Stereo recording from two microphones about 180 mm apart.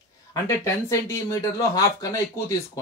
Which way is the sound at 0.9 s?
15° left (ahead or behind).